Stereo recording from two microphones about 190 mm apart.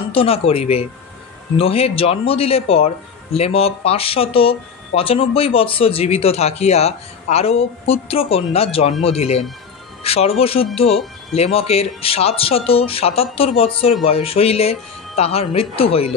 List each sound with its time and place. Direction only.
0.1 s speech: 30° left (ahead or behind)